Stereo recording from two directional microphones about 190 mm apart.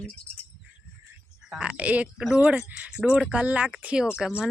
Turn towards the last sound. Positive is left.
turn(degrees=-5)  # may be behind; listen again after turning